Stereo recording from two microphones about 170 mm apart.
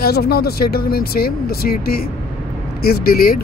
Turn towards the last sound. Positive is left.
turn(degrees=60)  # may be behind; listen again after turning